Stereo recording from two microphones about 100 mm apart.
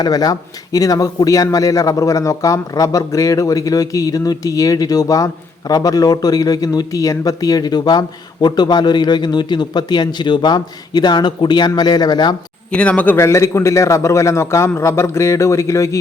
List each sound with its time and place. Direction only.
0.0 s speech: 40° left (ahead or behind)
12.7 s speech: 15° left (ahead or behind)
13.1 s a man's voice: 30° left (ahead or behind)